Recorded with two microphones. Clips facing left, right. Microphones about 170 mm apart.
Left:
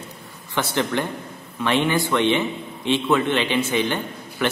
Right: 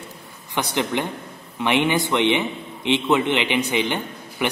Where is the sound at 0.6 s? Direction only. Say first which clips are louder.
Even; 15° right (ahead or behind).